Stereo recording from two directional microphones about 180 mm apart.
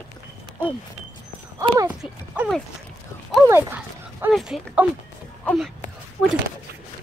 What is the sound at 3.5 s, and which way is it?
Speech, 10° right (ahead or behind).